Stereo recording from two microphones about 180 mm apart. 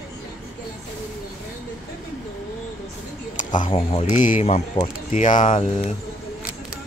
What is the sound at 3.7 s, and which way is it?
Speech, 30° left (ahead or behind).